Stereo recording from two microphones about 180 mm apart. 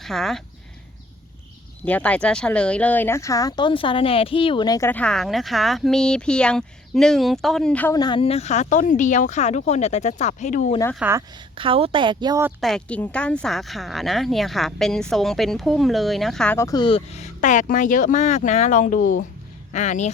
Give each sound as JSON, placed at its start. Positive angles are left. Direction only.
{"t": 0.0, "sound": "speech", "side_deg": 0}
{"t": 1.8, "sound": "speech", "side_deg": 5}
{"t": 7.9, "sound": "speech", "side_deg": 25}
{"t": 11.0, "sound": "a woman's voice", "side_deg": -5}
{"t": 11.5, "sound": "a woman's voice", "side_deg": -30}
{"t": 12.5, "sound": "speech", "side_deg": 0}
{"t": 16.6, "sound": "speech", "side_deg": 20}